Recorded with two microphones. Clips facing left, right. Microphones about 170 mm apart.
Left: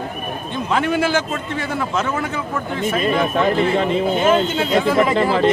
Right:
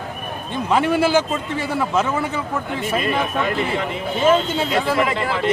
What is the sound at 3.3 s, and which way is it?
Speech, 30° left (ahead or behind).